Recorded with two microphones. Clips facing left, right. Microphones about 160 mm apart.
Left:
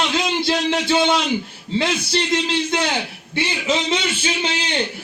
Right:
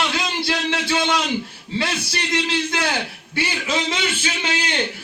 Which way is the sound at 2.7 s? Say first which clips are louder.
Left 2 dB; 20° left (ahead or behind).